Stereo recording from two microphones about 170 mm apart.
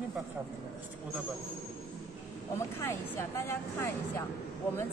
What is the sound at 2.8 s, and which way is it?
Speech, 15° left (ahead or behind).